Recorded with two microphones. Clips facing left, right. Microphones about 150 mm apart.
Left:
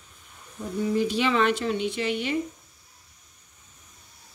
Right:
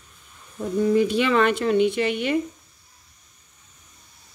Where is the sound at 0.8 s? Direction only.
55° right (ahead or behind).